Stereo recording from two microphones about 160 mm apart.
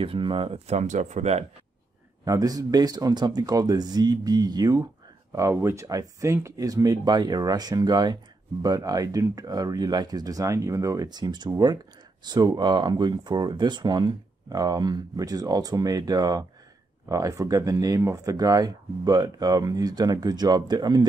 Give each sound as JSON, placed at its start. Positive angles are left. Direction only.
{"t": 0.0, "sound": "speech", "side_deg": -35}
{"t": 2.2, "sound": "speech", "side_deg": -25}